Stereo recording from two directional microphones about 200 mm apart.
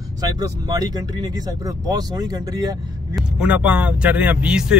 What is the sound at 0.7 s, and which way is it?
Speech, 20° right (ahead or behind).